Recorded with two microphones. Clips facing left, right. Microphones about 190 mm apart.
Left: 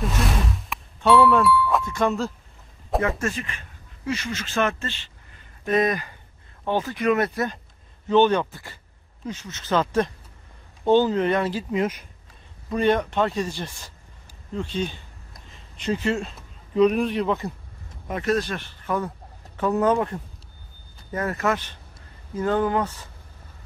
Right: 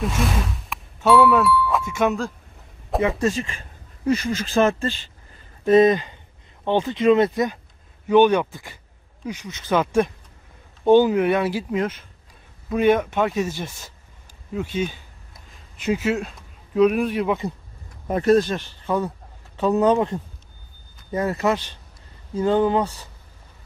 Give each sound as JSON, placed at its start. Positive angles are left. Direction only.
{"t": 0.0, "sound": "speech", "side_deg": 0}
{"t": 3.2, "sound": "speech", "side_deg": -25}
{"t": 4.0, "sound": "speech", "side_deg": -35}
{"t": 18.0, "sound": "a man's voice", "side_deg": -35}